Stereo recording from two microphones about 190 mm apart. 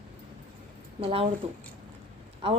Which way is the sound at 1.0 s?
30° right (ahead or behind).